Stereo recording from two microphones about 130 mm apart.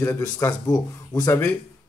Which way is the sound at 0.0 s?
20° left (ahead or behind).